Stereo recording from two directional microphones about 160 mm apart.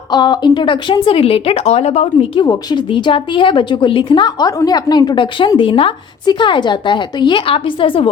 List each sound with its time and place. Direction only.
0.1 s a woman's voice: 25° left (ahead or behind)